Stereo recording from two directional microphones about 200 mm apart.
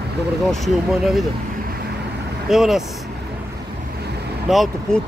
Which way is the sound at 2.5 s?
Centre (ahead or behind).